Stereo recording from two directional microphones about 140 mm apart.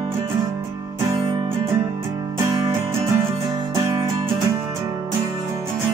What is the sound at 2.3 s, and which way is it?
Music, 20° right (ahead or behind).